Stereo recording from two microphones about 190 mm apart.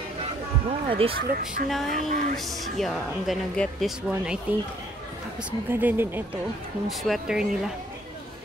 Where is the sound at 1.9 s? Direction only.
45° right (ahead or behind).